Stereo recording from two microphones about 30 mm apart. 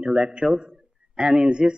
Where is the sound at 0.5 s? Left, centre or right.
Right.